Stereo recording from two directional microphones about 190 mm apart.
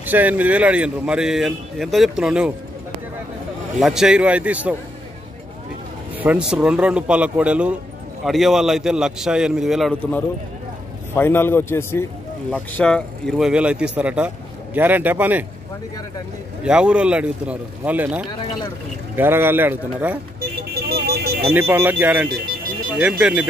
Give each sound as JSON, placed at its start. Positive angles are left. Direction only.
{"t": 0.0, "sound": "speech", "side_deg": -10}
{"t": 3.8, "sound": "speech", "side_deg": -5}
{"t": 6.1, "sound": "speech", "side_deg": -5}
{"t": 11.1, "sound": "speech", "side_deg": 10}
{"t": 16.6, "sound": "speech", "side_deg": -5}
{"t": 20.9, "sound": "alarm", "side_deg": -55}
{"t": 21.5, "sound": "speech", "side_deg": -10}